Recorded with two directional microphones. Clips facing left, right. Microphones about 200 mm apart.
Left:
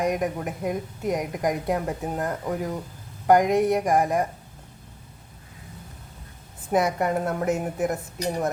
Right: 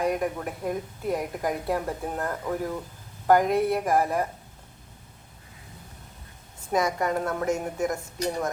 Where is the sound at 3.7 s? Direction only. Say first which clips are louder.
Left 2 dB; 15° left (ahead or behind).